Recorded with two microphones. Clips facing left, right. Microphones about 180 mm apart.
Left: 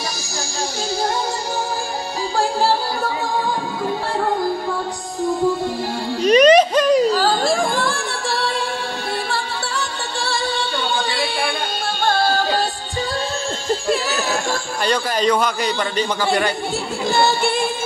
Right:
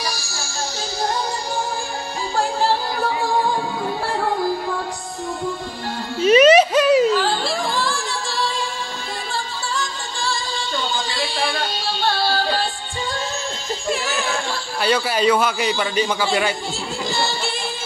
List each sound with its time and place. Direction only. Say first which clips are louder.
6.2 s a sound: even; 5° right (ahead or behind)
7.1 s a sound: left 3 dB; 40° left (ahead or behind); by 8.5 s 60° left (ahead or behind)
9.3 s music: left 2 dB; 65° left (ahead or behind); by 12.6 s 45° left (ahead or behind)
13.7 s music: left 5 dB; 35° left (ahead or behind)
14.9 s a man's voice: right 1 dB; 5° right (ahead or behind)
17.1 s music: left 9 dB; 55° left (ahead or behind)